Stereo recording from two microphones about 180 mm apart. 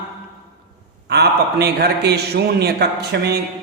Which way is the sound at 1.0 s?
65° right (ahead or behind).